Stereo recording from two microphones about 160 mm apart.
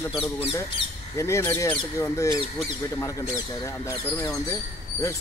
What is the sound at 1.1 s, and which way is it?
Speech, 15° left (ahead or behind).